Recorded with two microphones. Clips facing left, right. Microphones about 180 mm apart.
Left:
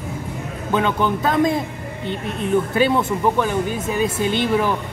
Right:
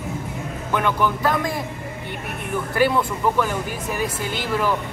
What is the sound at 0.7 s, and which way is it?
Speech, 20° left (ahead or behind).